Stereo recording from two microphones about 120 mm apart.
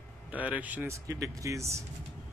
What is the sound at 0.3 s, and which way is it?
Speech, 10° right (ahead or behind).